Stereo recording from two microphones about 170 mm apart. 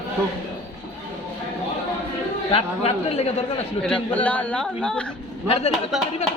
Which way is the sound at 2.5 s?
35° left (ahead or behind).